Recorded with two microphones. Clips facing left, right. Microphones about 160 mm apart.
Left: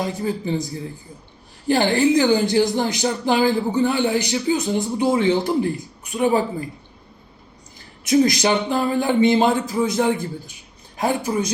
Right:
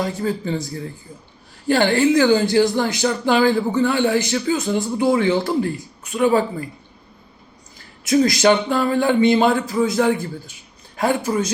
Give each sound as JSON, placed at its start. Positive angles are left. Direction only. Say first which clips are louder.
{"t": 0.0, "sound": "speech", "louder": "right 1 dB", "side_deg": 15}
{"t": 8.0, "sound": "speech", "louder": "right 2 dB", "side_deg": 20}